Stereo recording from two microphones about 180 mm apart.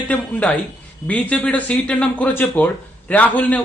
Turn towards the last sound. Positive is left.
turn(degrees=10)  # may be behind; listen again after turning